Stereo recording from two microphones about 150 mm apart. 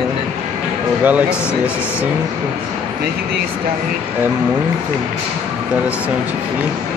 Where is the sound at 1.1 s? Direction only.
10° right (ahead or behind).